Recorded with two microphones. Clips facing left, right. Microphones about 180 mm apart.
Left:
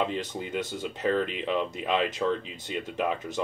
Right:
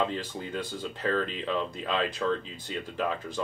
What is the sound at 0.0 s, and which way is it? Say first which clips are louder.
Speech: left 1 dB; 15° left (ahead or behind).